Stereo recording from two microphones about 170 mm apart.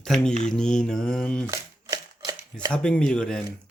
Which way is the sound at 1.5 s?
20° right (ahead or behind).